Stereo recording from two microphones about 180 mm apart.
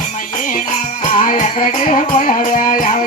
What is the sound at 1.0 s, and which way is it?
Music, 45° left (ahead or behind).